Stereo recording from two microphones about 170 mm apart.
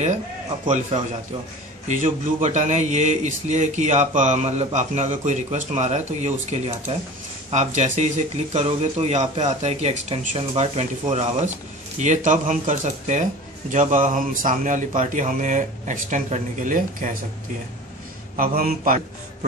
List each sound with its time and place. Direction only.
0.7 s a man's voice: 45° right (ahead or behind)
18.3 s a man's voice: 55° right (ahead or behind)